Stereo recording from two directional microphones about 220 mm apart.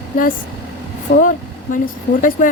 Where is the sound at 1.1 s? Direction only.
65° left (ahead or behind).